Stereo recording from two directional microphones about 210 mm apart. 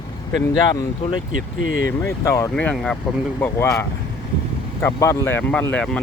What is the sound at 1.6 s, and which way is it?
Speech, 65° left (ahead or behind).